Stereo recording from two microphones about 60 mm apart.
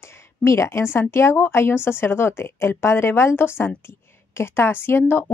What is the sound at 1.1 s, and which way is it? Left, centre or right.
A woman's voice, left.